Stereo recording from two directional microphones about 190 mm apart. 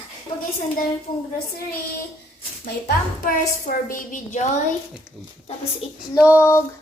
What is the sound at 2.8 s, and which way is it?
A woman's voice, 50° left (ahead or behind).